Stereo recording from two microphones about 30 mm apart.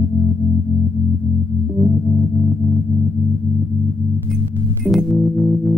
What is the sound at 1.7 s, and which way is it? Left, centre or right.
Music, centre.